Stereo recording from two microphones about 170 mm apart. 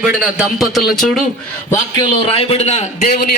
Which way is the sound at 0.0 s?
5° right (ahead or behind).